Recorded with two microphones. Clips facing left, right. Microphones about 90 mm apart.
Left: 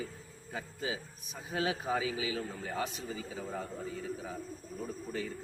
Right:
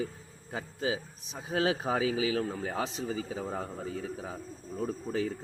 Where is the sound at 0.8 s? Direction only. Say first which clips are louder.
Right 7 dB; 85° right.